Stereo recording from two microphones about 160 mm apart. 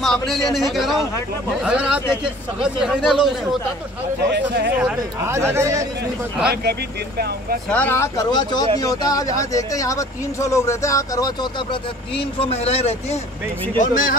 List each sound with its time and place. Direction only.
0.0 s a man's voice: centre (ahead or behind)
4.2 s speech: 90° right
4.7 s speech: 10° right (ahead or behind)
7.7 s speech: 10° left (ahead or behind)
12.4 s speech: 40° left (ahead or behind)
13.7 s speech: 55° left (ahead or behind)